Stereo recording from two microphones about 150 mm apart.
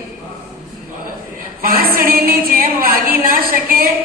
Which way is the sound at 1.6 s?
75° right (ahead or behind).